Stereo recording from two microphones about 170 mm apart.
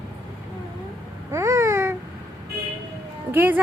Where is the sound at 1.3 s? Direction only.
15° right (ahead or behind).